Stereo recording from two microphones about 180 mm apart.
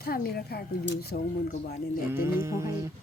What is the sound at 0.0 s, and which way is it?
Speech, 55° left (ahead or behind).